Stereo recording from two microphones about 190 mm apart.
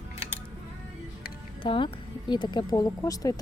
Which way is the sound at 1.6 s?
25° left (ahead or behind).